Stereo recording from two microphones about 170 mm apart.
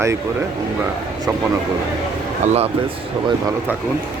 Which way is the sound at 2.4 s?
40° right (ahead or behind).